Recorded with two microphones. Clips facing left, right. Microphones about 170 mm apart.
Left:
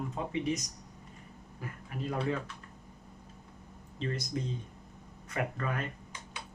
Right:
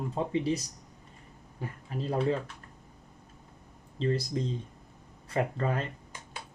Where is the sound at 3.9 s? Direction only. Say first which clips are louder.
Right 6 dB; 30° right (ahead or behind).